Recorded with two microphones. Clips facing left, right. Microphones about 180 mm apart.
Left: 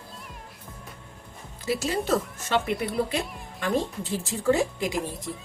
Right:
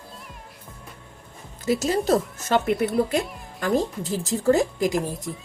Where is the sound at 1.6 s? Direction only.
45° right (ahead or behind).